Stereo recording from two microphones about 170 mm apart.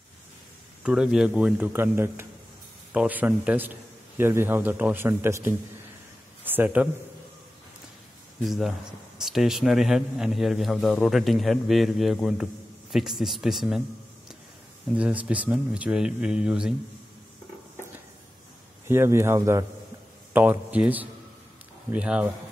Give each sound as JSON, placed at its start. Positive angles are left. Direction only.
{"t": 0.8, "sound": "a man's voice", "side_deg": -5}
{"t": 8.5, "sound": "a man's voice", "side_deg": 0}
{"t": 15.0, "sound": "a man's voice", "side_deg": -5}
{"t": 18.9, "sound": "a man's voice", "side_deg": -15}